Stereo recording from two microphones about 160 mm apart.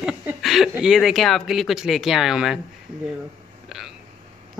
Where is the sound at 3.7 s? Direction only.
Centre (ahead or behind).